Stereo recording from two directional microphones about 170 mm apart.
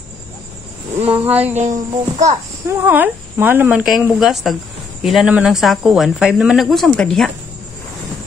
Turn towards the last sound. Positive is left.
turn(degrees=5)  # may be behind; listen again after turning